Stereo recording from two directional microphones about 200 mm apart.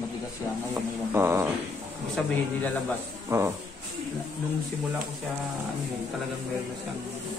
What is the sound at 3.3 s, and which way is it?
Speech, 15° right (ahead or behind).